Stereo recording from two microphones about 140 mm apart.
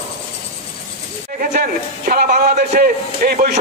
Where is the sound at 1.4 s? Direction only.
80° right.